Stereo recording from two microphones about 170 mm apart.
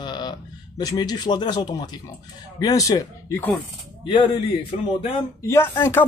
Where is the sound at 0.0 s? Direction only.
25° left (ahead or behind).